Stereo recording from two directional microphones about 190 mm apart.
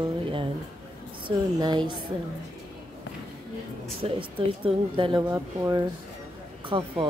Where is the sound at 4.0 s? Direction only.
30° right (ahead or behind).